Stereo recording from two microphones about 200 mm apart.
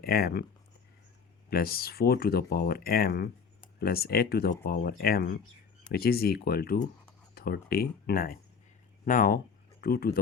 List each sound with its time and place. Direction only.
0.0 s speech: 50° left (ahead or behind)
1.5 s speech: 50° left (ahead or behind)